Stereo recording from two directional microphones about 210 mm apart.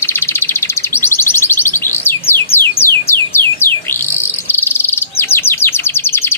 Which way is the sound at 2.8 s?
10° left (ahead or behind).